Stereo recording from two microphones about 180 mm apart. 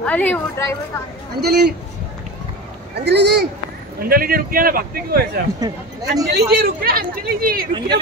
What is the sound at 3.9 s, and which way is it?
A man's voice, 55° right (ahead or behind).